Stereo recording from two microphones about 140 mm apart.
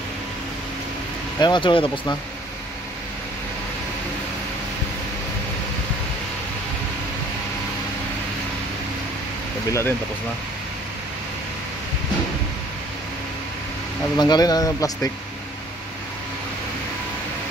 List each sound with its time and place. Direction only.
1.4 s speech: 35° left (ahead or behind)
9.7 s speech: 20° left (ahead or behind)
14.1 s speech: 30° left (ahead or behind)